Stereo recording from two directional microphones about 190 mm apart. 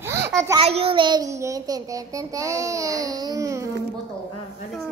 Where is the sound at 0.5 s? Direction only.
30° right (ahead or behind); by 3.7 s 15° right (ahead or behind).